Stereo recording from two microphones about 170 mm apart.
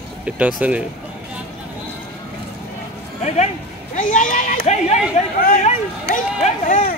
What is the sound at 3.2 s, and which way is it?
Speech, 40° left (ahead or behind).